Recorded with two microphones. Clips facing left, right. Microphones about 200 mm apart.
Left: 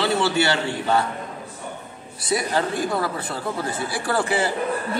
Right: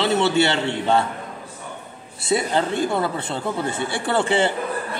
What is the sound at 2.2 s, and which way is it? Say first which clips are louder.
Speech: right 2 dB; 25° right (ahead or behind).